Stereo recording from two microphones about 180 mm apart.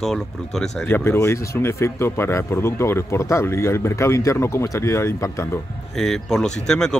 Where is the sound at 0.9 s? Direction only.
15° left (ahead or behind).